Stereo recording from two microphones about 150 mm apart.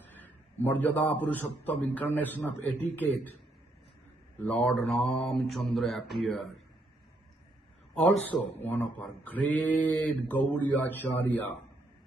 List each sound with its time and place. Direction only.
0.2 s speech: 10° left (ahead or behind)
4.4 s speech: 10° left (ahead or behind)
7.9 s speech: 5° left (ahead or behind)